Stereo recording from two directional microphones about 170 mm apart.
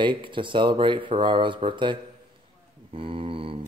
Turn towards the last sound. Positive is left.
turn(degrees=-30)  # may be behind; listen again after turning